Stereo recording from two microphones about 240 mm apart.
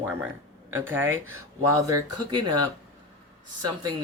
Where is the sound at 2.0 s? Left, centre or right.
Right.